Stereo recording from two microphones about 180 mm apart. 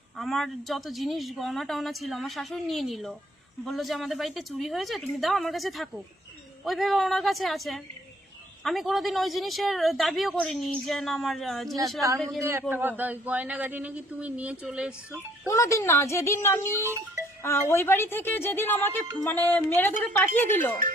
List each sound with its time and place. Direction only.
0.2 s a woman's voice: centre (ahead or behind)
12.4 s speech: 15° right (ahead or behind)
15.4 s speech: 15° left (ahead or behind)